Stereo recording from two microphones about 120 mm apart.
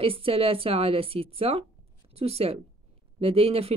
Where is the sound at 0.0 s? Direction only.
50° right (ahead or behind).